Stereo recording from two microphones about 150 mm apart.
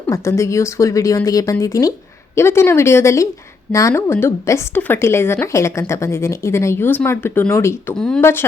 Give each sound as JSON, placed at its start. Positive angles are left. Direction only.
{"t": 0.1, "sound": "a woman's voice", "side_deg": 20}
{"t": 7.9, "sound": "speech", "side_deg": 5}
{"t": 8.2, "sound": "a woman's voice", "side_deg": 15}